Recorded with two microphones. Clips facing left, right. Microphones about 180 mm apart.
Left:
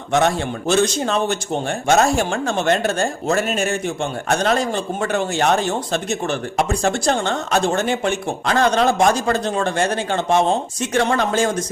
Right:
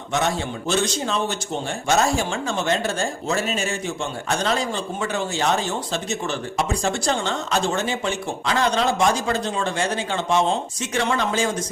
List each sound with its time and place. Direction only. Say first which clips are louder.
0.7 s speech: left 5 dB; 55° left (ahead or behind)